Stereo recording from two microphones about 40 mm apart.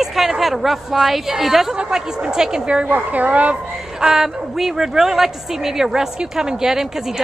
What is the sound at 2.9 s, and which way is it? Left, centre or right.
Speech, right.